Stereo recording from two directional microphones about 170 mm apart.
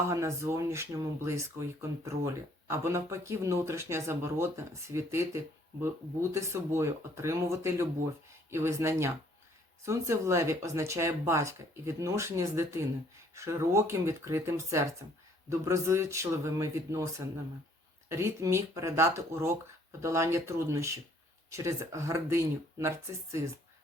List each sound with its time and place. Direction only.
0.1 s speech: 15° right (ahead or behind)